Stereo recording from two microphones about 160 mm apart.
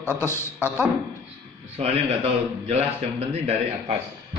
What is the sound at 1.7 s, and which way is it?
Speech, 40° right (ahead or behind).